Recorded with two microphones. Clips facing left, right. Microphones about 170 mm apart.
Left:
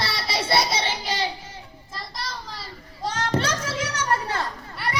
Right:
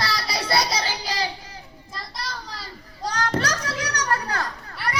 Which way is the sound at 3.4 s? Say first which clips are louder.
Left 1 dB; 25° left (ahead or behind).